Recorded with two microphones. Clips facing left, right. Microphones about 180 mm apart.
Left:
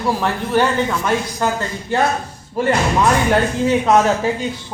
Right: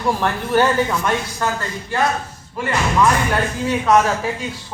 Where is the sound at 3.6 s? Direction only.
20° left (ahead or behind).